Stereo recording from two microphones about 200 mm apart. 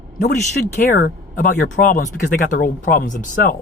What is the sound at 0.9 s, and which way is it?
Speech, 40° left (ahead or behind).